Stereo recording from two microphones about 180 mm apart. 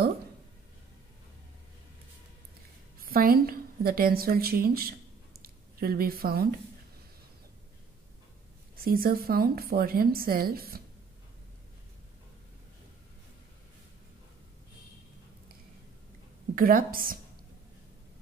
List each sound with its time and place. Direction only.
3.0 s a woman's voice: 55° right (ahead or behind)
5.4 s a sound: 55° right (ahead or behind)
8.7 s a woman's voice: 55° right (ahead or behind)
16.5 s a woman's voice: 50° right (ahead or behind)